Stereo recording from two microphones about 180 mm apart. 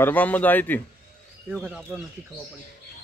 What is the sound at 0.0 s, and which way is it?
A man's voice, 10° left (ahead or behind).